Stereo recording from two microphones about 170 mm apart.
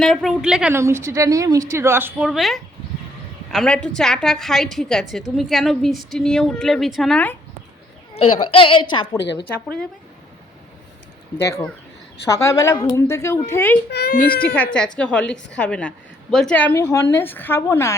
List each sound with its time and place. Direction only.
0.0 s a woman's voice: centre (ahead or behind)
0.8 s a woman's voice: 15° right (ahead or behind); by 7.3 s 5° left (ahead or behind)
8.1 s a child's voice: 35° left (ahead or behind)
11.3 s a woman's voice: 15° left (ahead or behind)
13.9 s a child's voice: 65° left (ahead or behind)
14.4 s a woman's voice: 10° left (ahead or behind)